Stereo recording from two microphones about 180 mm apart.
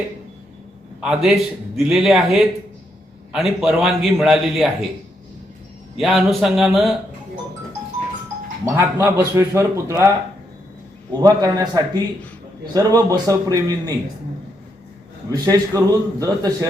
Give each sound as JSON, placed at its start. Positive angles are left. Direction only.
{"t": 1.0, "sound": "a man's voice", "side_deg": 0}
{"t": 6.0, "sound": "a man's voice", "side_deg": 0}
{"t": 8.6, "sound": "a man's voice", "side_deg": -15}
{"t": 15.3, "sound": "a man's voice", "side_deg": -20}